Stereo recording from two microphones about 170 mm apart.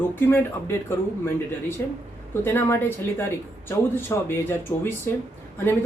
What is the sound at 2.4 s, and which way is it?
Speech, 15° left (ahead or behind).